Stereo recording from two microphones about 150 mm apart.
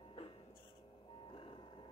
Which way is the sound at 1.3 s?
35° left (ahead or behind).